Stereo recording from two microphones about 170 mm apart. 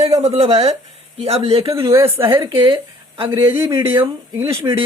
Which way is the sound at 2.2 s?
30° right (ahead or behind).